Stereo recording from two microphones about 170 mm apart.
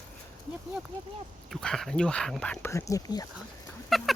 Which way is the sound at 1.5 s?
Centre (ahead or behind).